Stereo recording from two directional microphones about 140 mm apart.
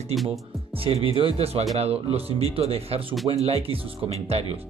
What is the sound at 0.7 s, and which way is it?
Speech, 40° right (ahead or behind).